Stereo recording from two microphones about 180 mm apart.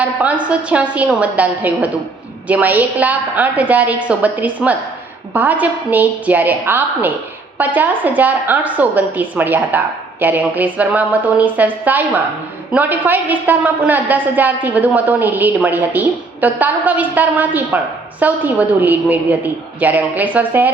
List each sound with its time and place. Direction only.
0.0 s a woman's voice: 10° right (ahead or behind)